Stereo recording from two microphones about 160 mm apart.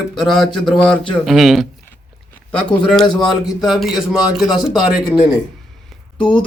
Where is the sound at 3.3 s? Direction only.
Centre (ahead or behind).